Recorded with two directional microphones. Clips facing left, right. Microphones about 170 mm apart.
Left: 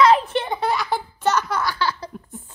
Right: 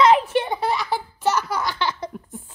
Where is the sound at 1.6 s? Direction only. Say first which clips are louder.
Left 1 dB; 20° right (ahead or behind).